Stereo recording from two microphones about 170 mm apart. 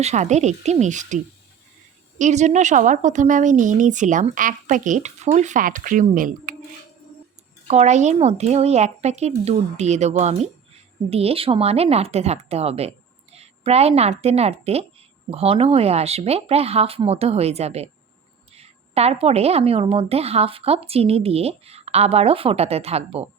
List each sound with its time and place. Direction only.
0.0 s a woman's voice: 40° right (ahead or behind)
7.7 s a woman's voice: 40° right (ahead or behind)